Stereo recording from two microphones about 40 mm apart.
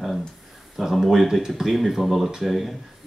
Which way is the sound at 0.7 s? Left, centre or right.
Centre.